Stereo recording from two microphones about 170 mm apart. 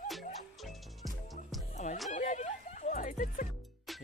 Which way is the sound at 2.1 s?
45° left (ahead or behind).